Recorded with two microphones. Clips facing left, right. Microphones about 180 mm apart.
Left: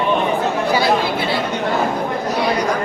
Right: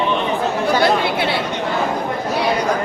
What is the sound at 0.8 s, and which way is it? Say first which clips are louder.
Speech: right 1 dB; 65° right (ahead or behind).